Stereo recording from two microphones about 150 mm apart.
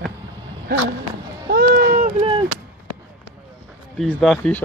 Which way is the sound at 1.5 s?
90° right.